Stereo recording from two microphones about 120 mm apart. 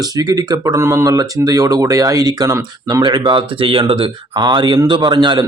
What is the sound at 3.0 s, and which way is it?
A man's voice, 40° right (ahead or behind).